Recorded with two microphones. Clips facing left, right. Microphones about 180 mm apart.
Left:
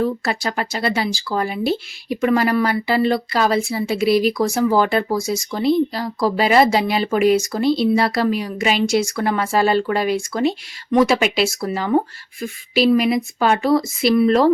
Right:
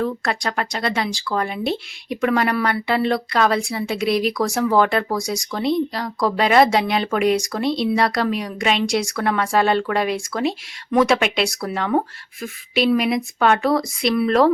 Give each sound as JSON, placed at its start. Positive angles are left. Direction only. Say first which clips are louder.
{"t": 0.0, "sound": "speech", "louder": "left 2 dB", "side_deg": 5}